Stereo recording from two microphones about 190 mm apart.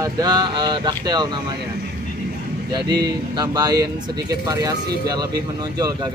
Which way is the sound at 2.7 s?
20° right (ahead or behind).